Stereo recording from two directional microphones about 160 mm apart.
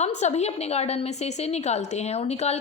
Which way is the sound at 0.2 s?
45° left (ahead or behind).